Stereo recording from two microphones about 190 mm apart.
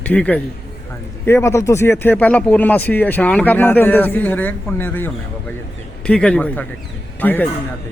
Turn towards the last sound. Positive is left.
turn(degrees=10)  # may be behind; listen again after turning